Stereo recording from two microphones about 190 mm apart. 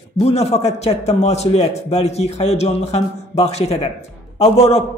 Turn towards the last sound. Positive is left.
turn(degrees=30)  # may be behind; listen again after turning